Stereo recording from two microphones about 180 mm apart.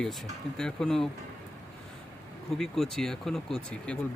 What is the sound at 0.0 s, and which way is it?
Speech, 5° left (ahead or behind).